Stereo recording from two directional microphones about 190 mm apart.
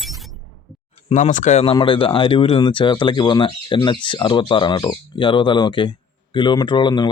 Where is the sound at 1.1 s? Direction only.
40° left (ahead or behind).